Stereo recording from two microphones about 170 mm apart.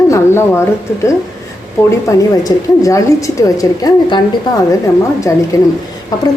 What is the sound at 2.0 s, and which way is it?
A woman's voice, 20° left (ahead or behind).